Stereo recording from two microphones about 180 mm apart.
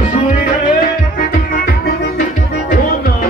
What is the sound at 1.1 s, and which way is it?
Music, 55° left (ahead or behind).